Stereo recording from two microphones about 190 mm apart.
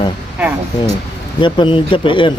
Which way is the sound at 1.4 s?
25° left (ahead or behind).